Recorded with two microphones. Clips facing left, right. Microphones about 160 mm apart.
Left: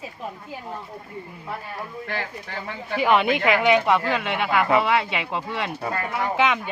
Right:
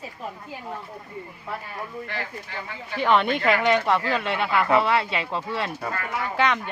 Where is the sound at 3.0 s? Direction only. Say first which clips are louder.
Left 1 dB; 5° left (ahead or behind).